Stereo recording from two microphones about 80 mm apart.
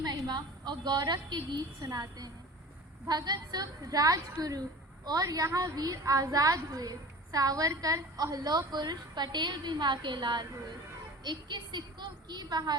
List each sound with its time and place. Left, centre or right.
0.0 s a woman's voice: right